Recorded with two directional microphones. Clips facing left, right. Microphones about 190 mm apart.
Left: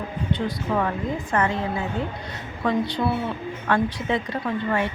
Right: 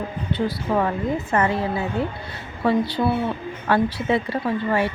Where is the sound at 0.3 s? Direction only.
10° right (ahead or behind).